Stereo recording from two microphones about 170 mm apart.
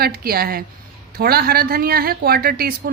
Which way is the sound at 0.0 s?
60° right (ahead or behind).